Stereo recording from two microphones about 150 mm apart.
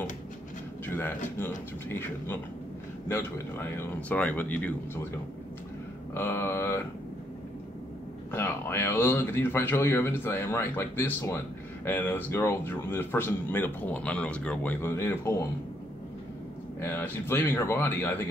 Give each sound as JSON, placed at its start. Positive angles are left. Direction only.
{"t": 0.8, "sound": "speech", "side_deg": 15}
{"t": 6.1, "sound": "speech", "side_deg": 15}
{"t": 8.3, "sound": "speech", "side_deg": 15}
{"t": 16.8, "sound": "speech", "side_deg": 15}